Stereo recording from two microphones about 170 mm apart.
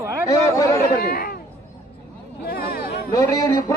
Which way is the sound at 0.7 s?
60° left (ahead or behind).